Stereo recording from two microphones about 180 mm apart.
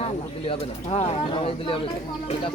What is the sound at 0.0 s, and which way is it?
Speech, 30° left (ahead or behind).